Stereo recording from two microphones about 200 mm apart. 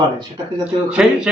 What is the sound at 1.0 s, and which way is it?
Speech, 5° right (ahead or behind).